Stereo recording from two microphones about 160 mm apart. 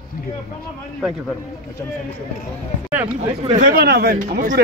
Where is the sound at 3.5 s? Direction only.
80° right; by 4.6 s 65° right (ahead or behind).